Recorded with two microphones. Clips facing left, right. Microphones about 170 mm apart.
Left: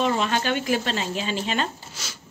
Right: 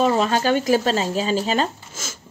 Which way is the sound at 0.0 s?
35° right (ahead or behind).